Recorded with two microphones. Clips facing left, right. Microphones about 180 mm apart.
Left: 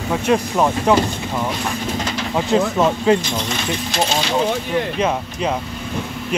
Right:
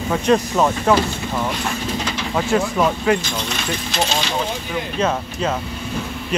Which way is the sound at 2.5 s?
20° left (ahead or behind).